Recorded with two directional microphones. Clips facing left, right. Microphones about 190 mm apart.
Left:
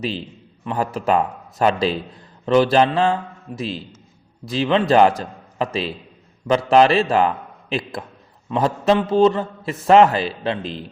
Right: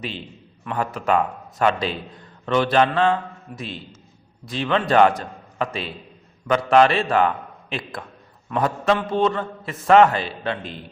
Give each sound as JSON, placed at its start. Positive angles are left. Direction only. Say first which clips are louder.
{"t": 0.0, "sound": "a man's voice", "louder": "left 6 dB", "side_deg": 35}